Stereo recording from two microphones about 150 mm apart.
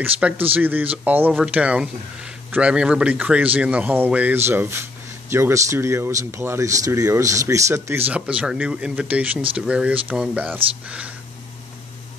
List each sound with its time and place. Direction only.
0.0 s speech: 10° right (ahead or behind)
8.1 s speech: 10° right (ahead or behind)